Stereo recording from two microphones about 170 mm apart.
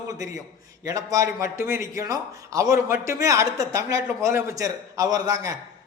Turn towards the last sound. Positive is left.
turn(degrees=-20)  # may be behind; listen again after turning